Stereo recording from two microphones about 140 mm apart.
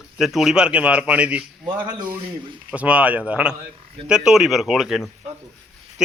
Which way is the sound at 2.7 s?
10° right (ahead or behind).